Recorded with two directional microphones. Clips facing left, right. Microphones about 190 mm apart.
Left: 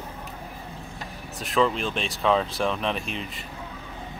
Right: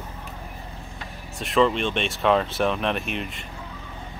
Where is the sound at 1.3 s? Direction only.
Centre (ahead or behind).